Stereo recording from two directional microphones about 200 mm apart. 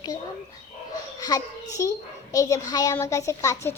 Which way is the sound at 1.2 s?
15° left (ahead or behind).